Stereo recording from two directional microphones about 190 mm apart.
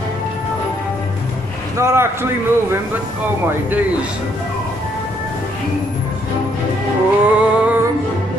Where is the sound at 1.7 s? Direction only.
15° right (ahead or behind).